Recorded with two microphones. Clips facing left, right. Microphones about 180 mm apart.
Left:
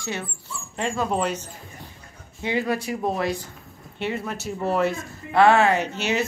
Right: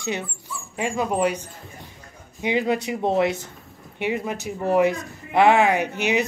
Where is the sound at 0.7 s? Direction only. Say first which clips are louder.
Right 1 dB; 10° right (ahead or behind).